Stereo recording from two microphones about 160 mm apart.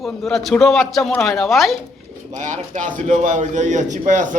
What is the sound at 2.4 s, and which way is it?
A man's voice, 50° right (ahead or behind).